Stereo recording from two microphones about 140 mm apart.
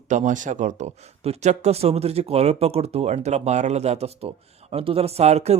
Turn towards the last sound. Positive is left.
turn(degrees=-50)  # may be behind; listen again after turning